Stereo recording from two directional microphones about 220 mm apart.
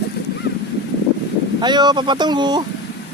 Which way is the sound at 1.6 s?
20° right (ahead or behind).